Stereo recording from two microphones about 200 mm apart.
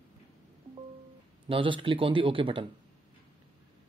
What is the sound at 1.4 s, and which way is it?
Speech, 25° right (ahead or behind).